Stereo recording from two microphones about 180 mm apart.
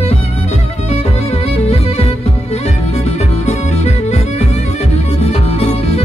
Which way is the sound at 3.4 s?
40° left (ahead or behind).